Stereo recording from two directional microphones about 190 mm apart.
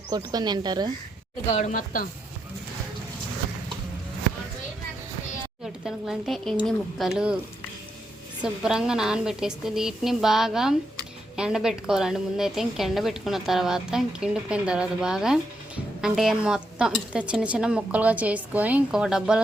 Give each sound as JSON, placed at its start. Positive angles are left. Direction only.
{"t": 0.1, "sound": "speech", "side_deg": -20}
{"t": 1.5, "sound": "speech", "side_deg": 40}
{"t": 5.6, "sound": "a woman's voice", "side_deg": 0}
{"t": 8.6, "sound": "a woman's voice", "side_deg": -5}